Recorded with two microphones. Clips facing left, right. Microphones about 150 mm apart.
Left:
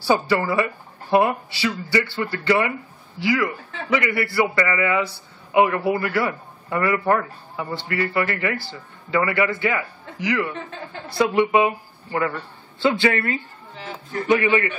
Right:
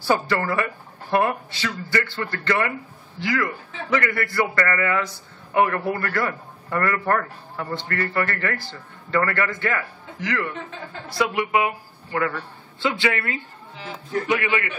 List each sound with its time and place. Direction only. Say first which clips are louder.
0.0 s a man's voice: left 2 dB; 5° left (ahead or behind)
11.1 s a man's voice: left 4 dB; 25° left (ahead or behind)